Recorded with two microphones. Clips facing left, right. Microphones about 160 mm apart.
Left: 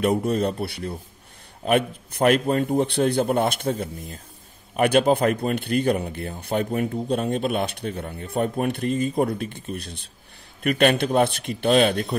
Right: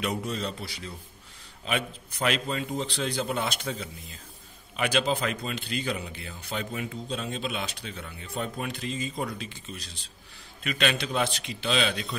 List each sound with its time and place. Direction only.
0.0 s speech: 55° left (ahead or behind)